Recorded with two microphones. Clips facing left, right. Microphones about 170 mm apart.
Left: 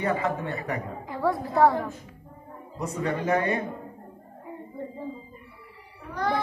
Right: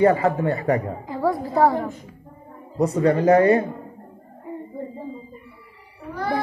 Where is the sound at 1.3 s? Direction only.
20° right (ahead or behind).